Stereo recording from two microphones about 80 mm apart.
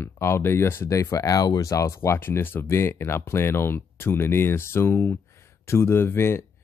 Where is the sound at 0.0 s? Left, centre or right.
Left.